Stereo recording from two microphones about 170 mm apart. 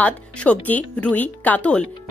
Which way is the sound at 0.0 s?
10° left (ahead or behind).